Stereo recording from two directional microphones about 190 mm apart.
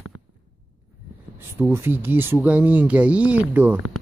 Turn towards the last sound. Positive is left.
turn(degrees=-10)  # may be behind; listen again after turning